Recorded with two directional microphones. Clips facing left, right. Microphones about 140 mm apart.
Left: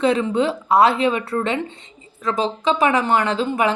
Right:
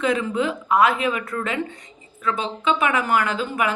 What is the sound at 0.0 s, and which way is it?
A woman's voice, 30° left (ahead or behind).